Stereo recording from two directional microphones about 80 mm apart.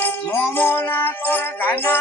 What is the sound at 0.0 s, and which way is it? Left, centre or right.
Music, left.